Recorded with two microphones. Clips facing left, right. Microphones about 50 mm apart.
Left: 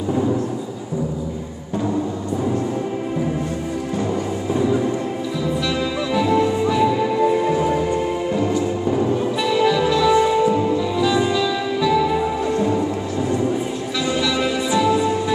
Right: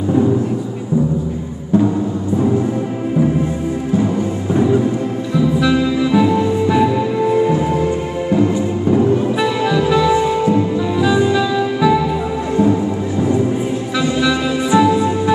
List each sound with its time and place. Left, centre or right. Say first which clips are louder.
5.6 s music: right 7 dB; centre
8.4 s music: right 4 dB; centre
14.7 s music: right 6 dB; right